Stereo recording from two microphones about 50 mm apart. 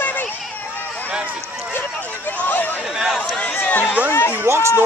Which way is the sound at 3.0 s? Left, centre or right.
Centre.